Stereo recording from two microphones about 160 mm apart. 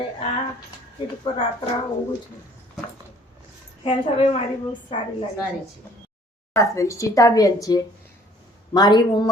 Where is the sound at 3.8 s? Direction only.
35° left (ahead or behind).